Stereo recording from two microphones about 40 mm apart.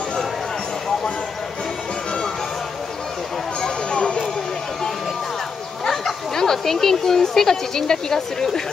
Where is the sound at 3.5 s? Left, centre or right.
Left.